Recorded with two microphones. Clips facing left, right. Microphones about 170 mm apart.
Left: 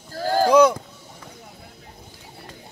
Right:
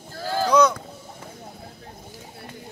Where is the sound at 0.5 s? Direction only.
30° left (ahead or behind).